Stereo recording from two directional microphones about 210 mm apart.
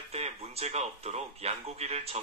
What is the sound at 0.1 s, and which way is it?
Speech, 30° right (ahead or behind).